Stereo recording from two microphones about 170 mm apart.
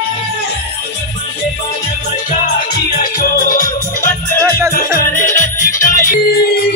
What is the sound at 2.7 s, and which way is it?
Music, 65° left (ahead or behind).